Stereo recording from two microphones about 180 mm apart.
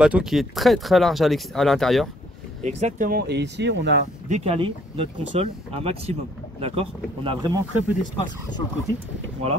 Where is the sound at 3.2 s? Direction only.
70° right (ahead or behind).